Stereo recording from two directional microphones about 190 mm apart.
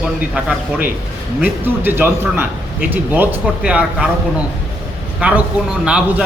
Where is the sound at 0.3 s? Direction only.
5° right (ahead or behind).